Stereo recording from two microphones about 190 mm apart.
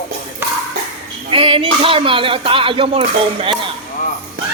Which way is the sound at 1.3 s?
30° right (ahead or behind).